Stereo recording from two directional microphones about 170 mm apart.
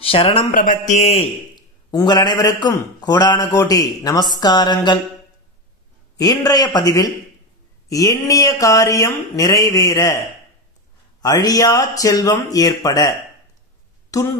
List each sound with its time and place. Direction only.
0.0 s speech: 35° left (ahead or behind)
0.5 s a man's voice: 50° left (ahead or behind)
1.5 s a man's voice: 25° left (ahead or behind)
6.2 s a man's voice: 20° left (ahead or behind)